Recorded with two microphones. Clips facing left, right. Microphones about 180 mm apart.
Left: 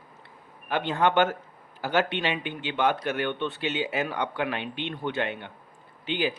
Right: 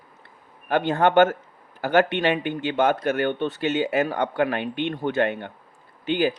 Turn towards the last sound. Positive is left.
turn(degrees=-45)  # may be behind; listen again after turning